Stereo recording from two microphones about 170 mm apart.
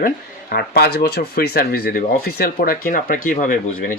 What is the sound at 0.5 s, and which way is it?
Speech, 75° left (ahead or behind).